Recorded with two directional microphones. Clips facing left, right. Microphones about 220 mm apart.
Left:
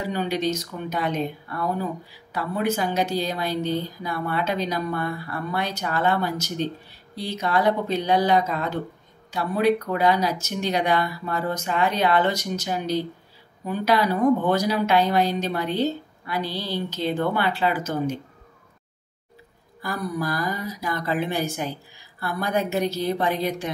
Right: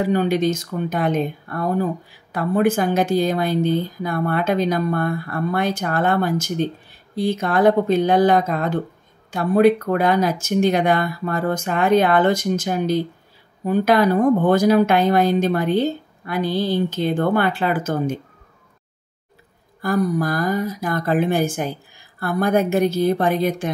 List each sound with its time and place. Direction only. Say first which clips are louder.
0.0 s speech: right 7 dB; 50° right (ahead or behind)
19.8 s speech: right 8 dB; 50° right (ahead or behind)